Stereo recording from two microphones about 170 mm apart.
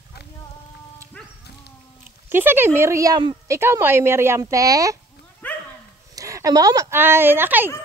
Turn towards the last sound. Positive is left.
turn(degrees=-10)  # may be behind; listen again after turning